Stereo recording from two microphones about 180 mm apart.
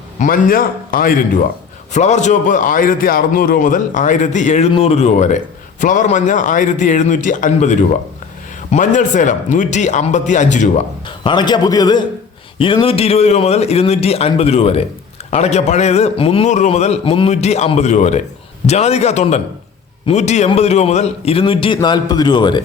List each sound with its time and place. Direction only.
0.2 s a man's voice: 50° left (ahead or behind)
1.9 s a man's voice: 40° left (ahead or behind)
11.0 s a man's voice: 25° left (ahead or behind)